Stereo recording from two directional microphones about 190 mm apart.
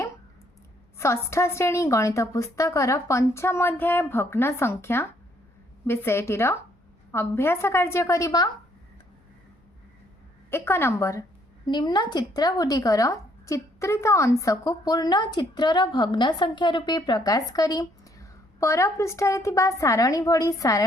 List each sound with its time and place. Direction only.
0.9 s a woman's voice: 15° left (ahead or behind)
10.5 s a woman's voice: 10° left (ahead or behind)